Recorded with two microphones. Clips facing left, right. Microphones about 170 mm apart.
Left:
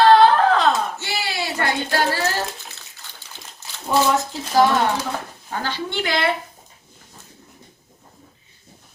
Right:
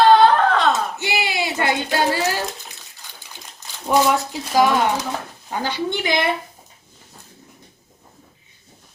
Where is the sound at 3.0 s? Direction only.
15° right (ahead or behind).